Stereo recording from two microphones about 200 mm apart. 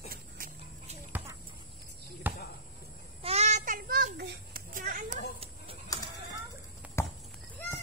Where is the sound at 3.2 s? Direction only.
35° right (ahead or behind).